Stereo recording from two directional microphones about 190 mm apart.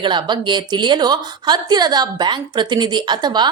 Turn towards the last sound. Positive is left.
turn(degrees=-20)  # may be behind; listen again after turning